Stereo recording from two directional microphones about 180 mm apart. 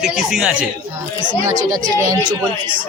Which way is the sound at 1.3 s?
20° right (ahead or behind).